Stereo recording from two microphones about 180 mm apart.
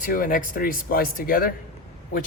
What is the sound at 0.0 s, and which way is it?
Speech, 50° left (ahead or behind).